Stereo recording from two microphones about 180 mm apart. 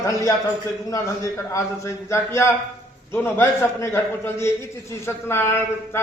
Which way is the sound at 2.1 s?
15° left (ahead or behind).